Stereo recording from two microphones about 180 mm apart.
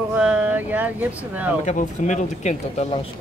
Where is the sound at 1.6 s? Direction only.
40° left (ahead or behind).